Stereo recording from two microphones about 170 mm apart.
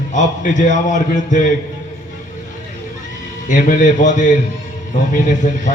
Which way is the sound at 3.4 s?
50° left (ahead or behind).